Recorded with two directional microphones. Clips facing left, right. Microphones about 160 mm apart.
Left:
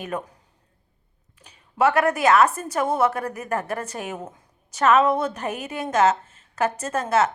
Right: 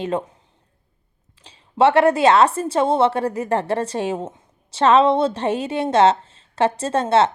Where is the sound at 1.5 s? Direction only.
30° right (ahead or behind).